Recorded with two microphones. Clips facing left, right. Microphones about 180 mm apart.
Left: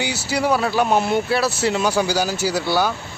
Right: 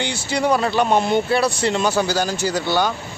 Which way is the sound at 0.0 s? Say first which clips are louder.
Even; 10° left (ahead or behind).